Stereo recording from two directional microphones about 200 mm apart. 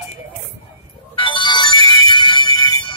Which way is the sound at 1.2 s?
25° left (ahead or behind).